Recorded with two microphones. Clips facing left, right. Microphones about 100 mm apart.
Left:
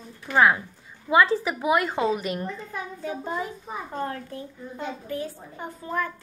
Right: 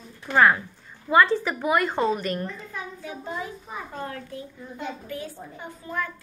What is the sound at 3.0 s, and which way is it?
A child's voice, 35° left (ahead or behind).